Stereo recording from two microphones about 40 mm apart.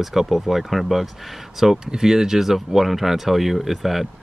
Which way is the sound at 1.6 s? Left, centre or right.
Centre.